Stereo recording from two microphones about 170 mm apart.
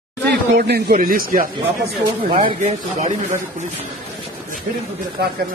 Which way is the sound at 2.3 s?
40° right (ahead or behind).